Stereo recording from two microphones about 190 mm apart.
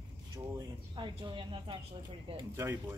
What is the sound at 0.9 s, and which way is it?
Speech, 25° right (ahead or behind).